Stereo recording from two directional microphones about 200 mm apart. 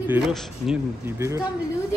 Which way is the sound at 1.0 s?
15° right (ahead or behind).